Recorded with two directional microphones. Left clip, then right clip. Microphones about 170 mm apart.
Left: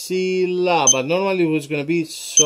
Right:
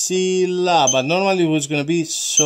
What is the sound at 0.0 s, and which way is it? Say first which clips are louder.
Speech: right 2 dB; 50° right (ahead or behind).